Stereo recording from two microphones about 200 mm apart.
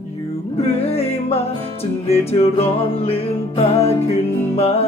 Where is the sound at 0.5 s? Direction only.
30° left (ahead or behind).